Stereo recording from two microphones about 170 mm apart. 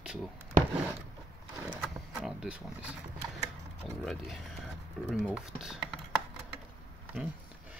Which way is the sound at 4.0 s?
Centre (ahead or behind).